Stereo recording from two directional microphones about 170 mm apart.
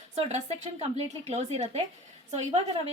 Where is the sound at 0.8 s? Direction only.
40° right (ahead or behind).